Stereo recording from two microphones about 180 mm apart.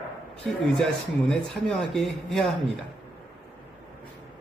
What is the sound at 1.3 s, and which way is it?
Speech, 5° left (ahead or behind).